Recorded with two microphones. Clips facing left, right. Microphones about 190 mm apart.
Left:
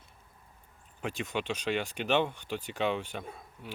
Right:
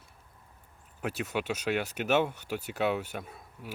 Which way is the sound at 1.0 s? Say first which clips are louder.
Right 2 dB; 5° right (ahead or behind).